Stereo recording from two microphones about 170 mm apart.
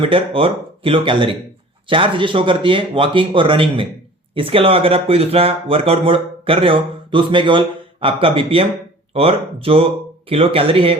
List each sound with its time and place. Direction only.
0.0 s speech: 30° right (ahead or behind)